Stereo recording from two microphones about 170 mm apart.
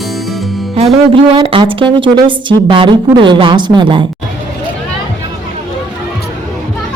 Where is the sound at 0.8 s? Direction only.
30° right (ahead or behind).